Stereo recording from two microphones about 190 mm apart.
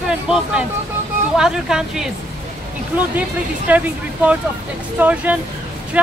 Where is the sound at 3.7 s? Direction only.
10° right (ahead or behind).